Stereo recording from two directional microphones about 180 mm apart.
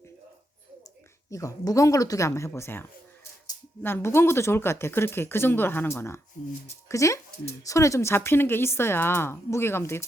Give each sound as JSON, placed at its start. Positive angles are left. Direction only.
{"t": 1.3, "sound": "speech", "side_deg": 15}